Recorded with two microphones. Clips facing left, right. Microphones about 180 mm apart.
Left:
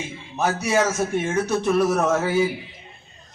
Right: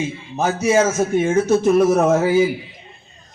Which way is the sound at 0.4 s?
20° right (ahead or behind).